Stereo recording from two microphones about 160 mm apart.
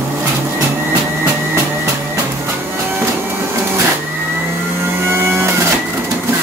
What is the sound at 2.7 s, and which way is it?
Music, 15° right (ahead or behind).